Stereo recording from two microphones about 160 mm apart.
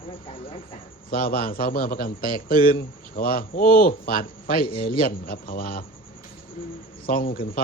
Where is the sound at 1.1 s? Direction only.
65° left (ahead or behind).